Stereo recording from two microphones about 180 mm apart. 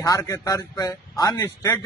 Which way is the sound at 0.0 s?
15° left (ahead or behind).